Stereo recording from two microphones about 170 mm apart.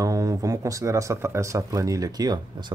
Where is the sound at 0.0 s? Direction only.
20° right (ahead or behind).